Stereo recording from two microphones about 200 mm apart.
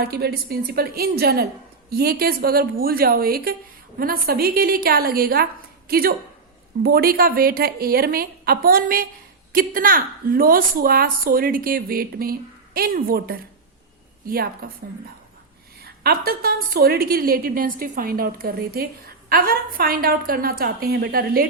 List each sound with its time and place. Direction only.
0.0 s a woman's voice: 50° right (ahead or behind)
15.8 s a woman's voice: 50° right (ahead or behind)